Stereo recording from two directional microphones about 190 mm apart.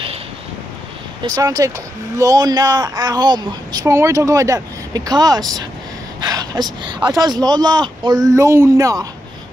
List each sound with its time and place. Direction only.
1.2 s a woman's voice: 20° right (ahead or behind)